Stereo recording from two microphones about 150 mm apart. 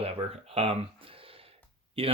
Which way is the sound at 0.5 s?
40° right (ahead or behind).